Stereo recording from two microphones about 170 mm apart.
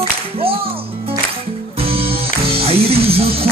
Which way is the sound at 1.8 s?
35° right (ahead or behind).